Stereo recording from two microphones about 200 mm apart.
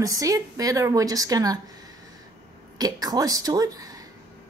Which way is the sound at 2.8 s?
20° right (ahead or behind).